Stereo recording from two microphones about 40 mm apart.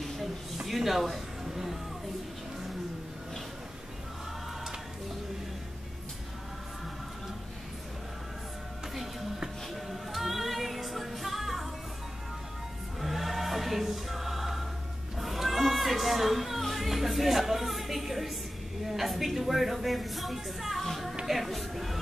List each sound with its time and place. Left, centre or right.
0.7 s speech: centre
8.9 s music: centre
13.0 s music: centre
18.9 s a sound: centre
21.3 s music: centre